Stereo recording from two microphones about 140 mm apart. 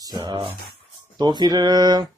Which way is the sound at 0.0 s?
30° right (ahead or behind).